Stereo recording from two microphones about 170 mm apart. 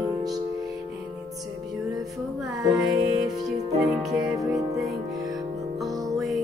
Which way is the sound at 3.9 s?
Centre (ahead or behind).